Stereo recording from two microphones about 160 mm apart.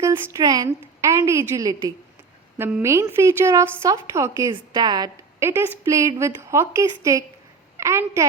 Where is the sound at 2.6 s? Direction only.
5° right (ahead or behind).